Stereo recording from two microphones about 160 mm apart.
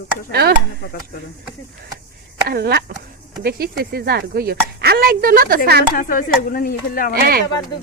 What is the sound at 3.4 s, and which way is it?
Speech, 70° right (ahead or behind).